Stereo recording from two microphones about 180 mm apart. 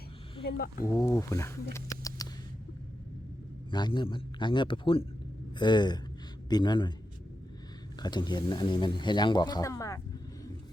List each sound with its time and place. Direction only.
0.4 s speech: 55° left (ahead or behind)
0.9 s speech: 15° left (ahead or behind)
3.7 s speech: 25° left (ahead or behind)
7.9 s speech: 25° left (ahead or behind)